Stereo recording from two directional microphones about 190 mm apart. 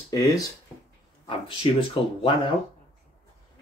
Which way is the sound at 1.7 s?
30° left (ahead or behind).